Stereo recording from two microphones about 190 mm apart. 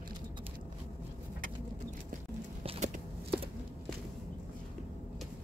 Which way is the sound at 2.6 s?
30° right (ahead or behind).